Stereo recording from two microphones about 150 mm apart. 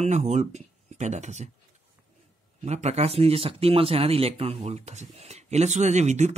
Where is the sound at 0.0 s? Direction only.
50° right (ahead or behind).